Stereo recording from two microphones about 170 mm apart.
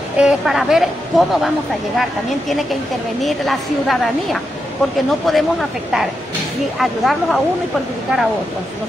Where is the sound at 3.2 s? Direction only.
Centre (ahead or behind).